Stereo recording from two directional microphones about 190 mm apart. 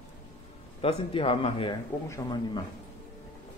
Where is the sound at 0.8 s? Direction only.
30° left (ahead or behind).